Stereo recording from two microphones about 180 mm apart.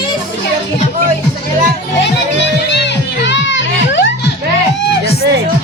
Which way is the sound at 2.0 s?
75° left (ahead or behind).